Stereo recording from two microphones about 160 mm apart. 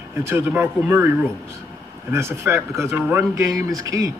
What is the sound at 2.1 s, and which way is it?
A man's voice, 15° right (ahead or behind).